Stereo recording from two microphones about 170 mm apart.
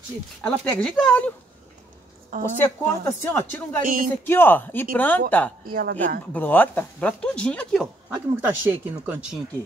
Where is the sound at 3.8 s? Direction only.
55° right (ahead or behind).